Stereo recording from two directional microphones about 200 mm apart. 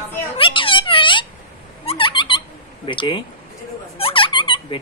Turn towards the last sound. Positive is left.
turn(degrees=25)  # may be behind; listen again after turning